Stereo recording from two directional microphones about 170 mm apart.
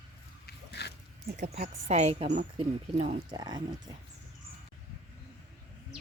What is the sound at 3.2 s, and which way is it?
Speech, 25° right (ahead or behind).